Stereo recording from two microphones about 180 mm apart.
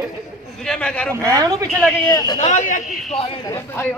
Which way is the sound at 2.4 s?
45° left (ahead or behind).